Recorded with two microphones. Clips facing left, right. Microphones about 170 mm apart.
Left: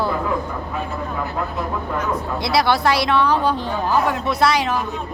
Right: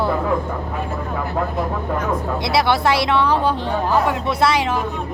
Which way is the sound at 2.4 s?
25° right (ahead or behind).